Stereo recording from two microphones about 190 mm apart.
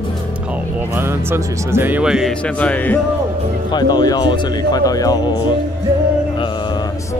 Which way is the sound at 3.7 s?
20° left (ahead or behind).